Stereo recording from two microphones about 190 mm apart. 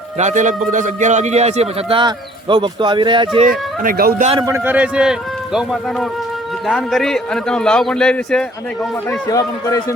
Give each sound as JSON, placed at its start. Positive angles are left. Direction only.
{"t": 0.2, "sound": "a man's voice", "side_deg": -40}
{"t": 3.8, "sound": "speech", "side_deg": -50}
{"t": 4.4, "sound": "a man's voice", "side_deg": -10}
{"t": 9.0, "sound": "speech", "side_deg": 15}